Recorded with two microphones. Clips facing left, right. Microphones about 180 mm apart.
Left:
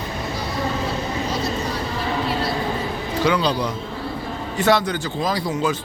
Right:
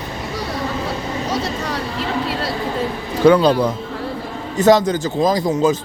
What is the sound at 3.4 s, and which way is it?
Speech, 50° right (ahead or behind).